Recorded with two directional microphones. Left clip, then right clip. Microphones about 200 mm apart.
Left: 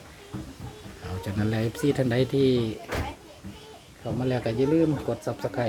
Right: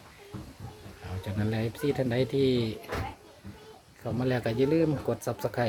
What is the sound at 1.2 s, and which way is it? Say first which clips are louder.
Speech: left 4 dB; 5° left (ahead or behind).